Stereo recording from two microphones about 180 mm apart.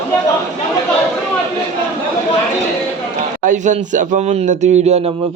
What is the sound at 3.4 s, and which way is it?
Speech, 45° right (ahead or behind).